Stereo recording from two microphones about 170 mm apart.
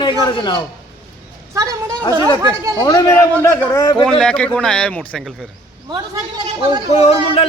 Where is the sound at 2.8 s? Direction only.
15° left (ahead or behind).